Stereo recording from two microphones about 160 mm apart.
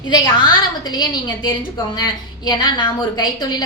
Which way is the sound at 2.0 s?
25° left (ahead or behind).